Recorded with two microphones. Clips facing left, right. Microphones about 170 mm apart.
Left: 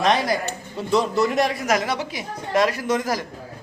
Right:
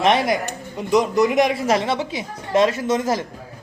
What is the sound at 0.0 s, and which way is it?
A man's voice, 25° right (ahead or behind).